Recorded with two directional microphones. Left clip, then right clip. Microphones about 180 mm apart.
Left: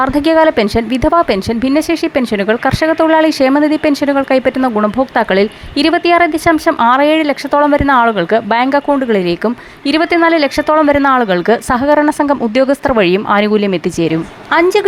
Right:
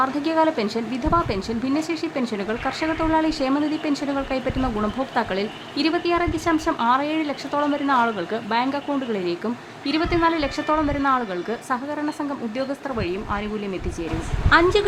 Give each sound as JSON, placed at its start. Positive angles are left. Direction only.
{"t": 0.0, "sound": "speech", "side_deg": 40}
{"t": 14.5, "sound": "speech", "side_deg": 35}